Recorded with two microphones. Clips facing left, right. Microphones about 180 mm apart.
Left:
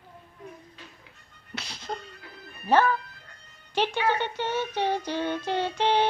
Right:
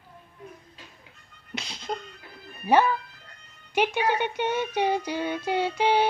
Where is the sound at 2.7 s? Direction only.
15° right (ahead or behind).